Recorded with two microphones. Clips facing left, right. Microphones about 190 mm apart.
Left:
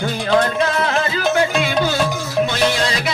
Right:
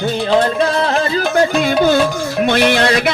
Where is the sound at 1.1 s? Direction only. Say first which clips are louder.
Right 4 dB; 40° right (ahead or behind).